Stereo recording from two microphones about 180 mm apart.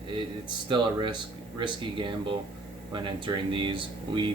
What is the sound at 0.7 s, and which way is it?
Speech, 25° right (ahead or behind).